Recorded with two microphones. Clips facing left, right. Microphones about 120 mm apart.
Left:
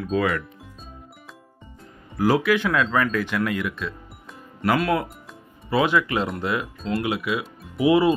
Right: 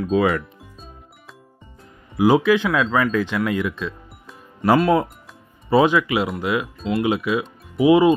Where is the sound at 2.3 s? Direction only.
20° right (ahead or behind).